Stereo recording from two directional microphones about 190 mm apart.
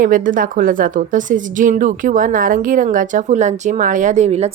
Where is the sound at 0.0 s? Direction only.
45° right (ahead or behind).